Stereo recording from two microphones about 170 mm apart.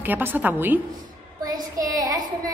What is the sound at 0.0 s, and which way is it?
Speech, 10° right (ahead or behind).